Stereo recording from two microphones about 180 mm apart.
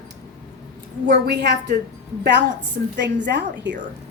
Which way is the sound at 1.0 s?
65° right (ahead or behind).